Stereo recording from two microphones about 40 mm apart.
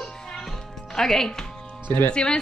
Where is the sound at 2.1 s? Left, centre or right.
Left.